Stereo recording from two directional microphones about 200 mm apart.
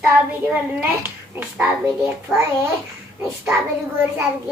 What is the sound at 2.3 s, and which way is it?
Speech, centre (ahead or behind).